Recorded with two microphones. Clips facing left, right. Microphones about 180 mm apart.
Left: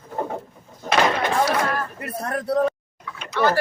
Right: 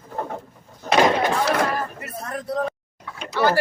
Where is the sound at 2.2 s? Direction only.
65° left (ahead or behind).